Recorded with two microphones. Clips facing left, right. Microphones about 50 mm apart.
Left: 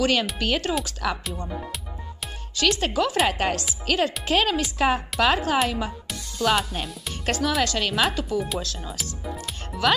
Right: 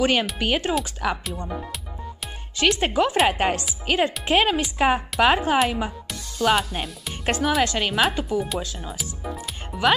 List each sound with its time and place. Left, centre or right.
0.0 s speech: right
2.5 s speech: right
6.6 s speech: centre
7.2 s speech: right